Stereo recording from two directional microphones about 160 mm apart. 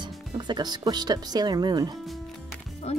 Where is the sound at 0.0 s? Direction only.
30° right (ahead or behind).